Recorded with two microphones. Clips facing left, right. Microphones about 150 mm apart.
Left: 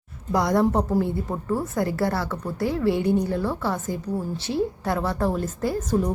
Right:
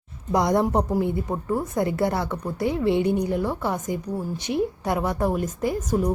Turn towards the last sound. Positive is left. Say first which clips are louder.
# even
turn(degrees=-10)  # may be behind; listen again after turning